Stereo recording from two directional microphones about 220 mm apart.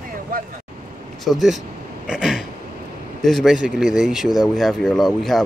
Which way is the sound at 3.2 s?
Centre (ahead or behind).